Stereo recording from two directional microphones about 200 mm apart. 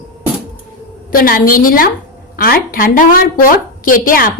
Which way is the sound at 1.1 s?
45° left (ahead or behind).